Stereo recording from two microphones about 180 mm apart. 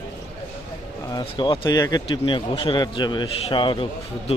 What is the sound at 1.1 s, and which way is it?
A man's voice, 25° left (ahead or behind).